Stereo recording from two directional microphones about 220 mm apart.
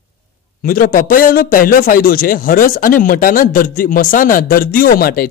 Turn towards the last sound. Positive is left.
turn(degrees=40)  # may be behind; listen again after turning